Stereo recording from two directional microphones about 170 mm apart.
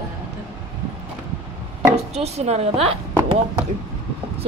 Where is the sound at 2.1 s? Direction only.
40° right (ahead or behind).